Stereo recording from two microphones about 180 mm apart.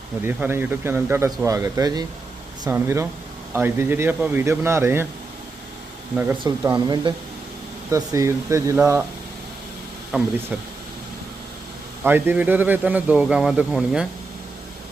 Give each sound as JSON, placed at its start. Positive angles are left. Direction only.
{"t": 0.2, "sound": "a man's voice", "side_deg": -10}
{"t": 6.7, "sound": "a man's voice", "side_deg": -25}
{"t": 10.1, "sound": "speech", "side_deg": 0}
{"t": 12.0, "sound": "a man's voice", "side_deg": -10}